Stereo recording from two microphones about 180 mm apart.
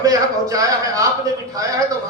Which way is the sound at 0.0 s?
20° right (ahead or behind).